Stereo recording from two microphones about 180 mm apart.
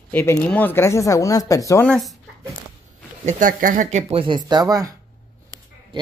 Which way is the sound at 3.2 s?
45° right (ahead or behind).